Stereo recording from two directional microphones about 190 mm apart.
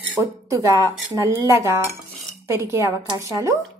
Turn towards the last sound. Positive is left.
turn(degrees=-15)  # may be behind; listen again after turning